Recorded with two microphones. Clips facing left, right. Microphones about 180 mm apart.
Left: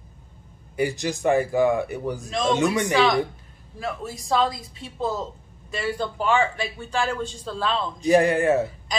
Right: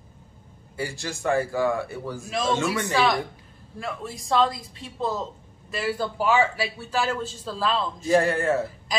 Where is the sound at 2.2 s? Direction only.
5° right (ahead or behind).